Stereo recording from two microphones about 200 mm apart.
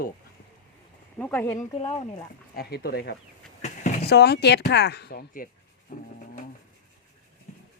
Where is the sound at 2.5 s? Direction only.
50° left (ahead or behind).